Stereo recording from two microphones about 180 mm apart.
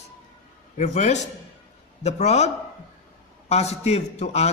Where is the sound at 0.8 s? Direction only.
40° left (ahead or behind).